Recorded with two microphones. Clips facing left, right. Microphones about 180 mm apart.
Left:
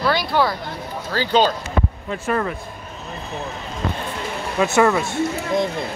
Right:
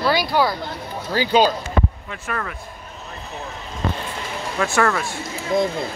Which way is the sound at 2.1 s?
30° left (ahead or behind).